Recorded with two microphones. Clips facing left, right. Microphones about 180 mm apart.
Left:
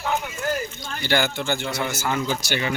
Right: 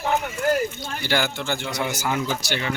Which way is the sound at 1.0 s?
Centre (ahead or behind).